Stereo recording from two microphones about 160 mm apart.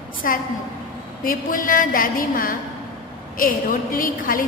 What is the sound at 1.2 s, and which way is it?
A woman's voice, 60° left (ahead or behind).